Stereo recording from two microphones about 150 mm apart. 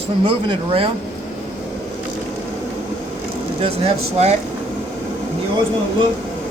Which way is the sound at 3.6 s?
40° right (ahead or behind).